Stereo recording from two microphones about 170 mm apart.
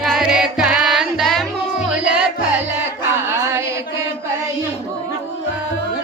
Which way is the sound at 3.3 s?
15° right (ahead or behind).